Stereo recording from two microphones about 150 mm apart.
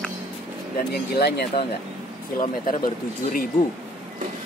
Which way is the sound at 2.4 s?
70° left (ahead or behind).